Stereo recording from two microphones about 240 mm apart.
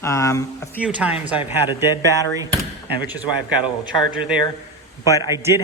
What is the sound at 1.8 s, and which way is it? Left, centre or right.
Speech, centre.